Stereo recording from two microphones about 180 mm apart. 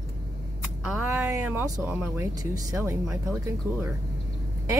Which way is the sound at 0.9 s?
10° right (ahead or behind).